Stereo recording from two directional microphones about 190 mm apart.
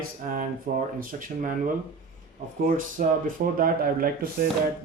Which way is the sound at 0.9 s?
45° right (ahead or behind).